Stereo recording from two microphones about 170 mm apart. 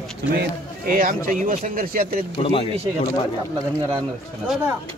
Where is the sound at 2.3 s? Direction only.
35° left (ahead or behind).